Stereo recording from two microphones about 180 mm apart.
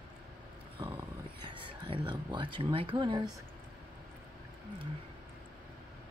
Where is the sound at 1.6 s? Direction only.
30° right (ahead or behind).